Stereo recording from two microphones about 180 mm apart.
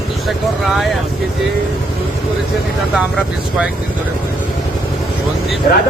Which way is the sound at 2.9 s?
5° right (ahead or behind).